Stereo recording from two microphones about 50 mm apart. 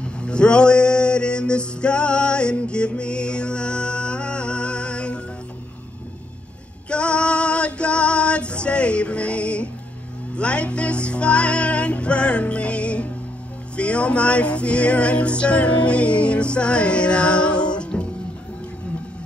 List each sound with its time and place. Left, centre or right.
0.0 s mantra: centre
6.9 s music: left